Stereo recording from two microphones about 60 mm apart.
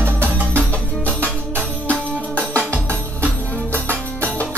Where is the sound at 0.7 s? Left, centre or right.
Left.